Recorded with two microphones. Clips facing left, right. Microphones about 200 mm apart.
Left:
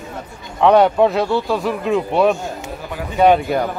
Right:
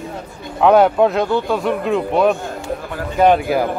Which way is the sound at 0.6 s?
Centre (ahead or behind).